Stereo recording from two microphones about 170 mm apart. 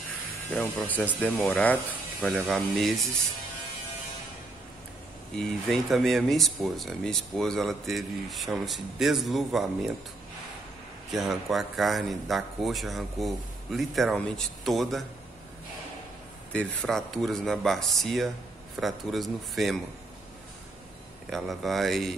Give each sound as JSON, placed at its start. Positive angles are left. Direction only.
{"t": 0.5, "sound": "speech", "side_deg": 10}
{"t": 5.3, "sound": "speech", "side_deg": 0}
{"t": 11.1, "sound": "speech", "side_deg": 0}
{"t": 16.5, "sound": "speech", "side_deg": 5}
{"t": 21.3, "sound": "speech", "side_deg": 0}